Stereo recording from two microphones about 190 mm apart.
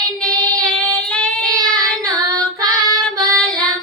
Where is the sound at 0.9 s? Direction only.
5° left (ahead or behind).